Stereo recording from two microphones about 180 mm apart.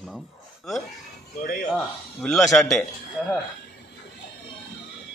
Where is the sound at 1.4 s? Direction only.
50° left (ahead or behind).